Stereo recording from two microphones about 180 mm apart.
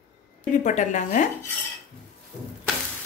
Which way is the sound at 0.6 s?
40° left (ahead or behind).